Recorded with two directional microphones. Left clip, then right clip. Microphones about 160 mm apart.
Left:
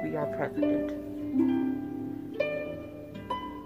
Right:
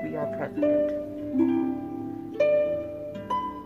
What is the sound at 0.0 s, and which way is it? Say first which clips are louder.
Speech: right 1 dB; 5° left (ahead or behind).